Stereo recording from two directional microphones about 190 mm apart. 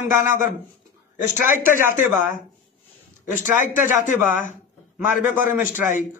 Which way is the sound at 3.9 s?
45° left (ahead or behind).